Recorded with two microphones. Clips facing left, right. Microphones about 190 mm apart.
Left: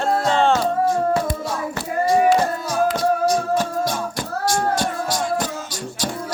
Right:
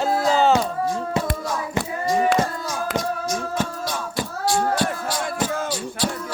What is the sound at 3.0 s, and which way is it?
Music, 35° left (ahead or behind).